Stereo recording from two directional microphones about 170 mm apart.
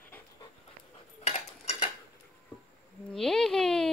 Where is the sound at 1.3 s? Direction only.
35° left (ahead or behind).